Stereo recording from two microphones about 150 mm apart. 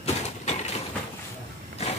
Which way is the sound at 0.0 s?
45° left (ahead or behind).